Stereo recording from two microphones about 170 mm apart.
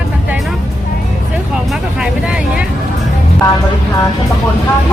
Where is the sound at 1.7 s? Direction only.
5° right (ahead or behind).